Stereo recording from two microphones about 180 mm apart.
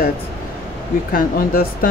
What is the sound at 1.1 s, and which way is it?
Speech, 55° left (ahead or behind).